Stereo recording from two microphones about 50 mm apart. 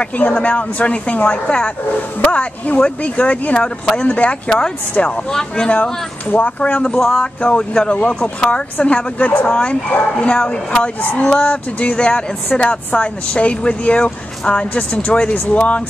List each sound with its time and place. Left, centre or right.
0.0 s speech: left
5.3 s speech: centre
6.3 s speech: left
7.0 s speech: centre
7.4 s speech: centre
11.0 s speech: left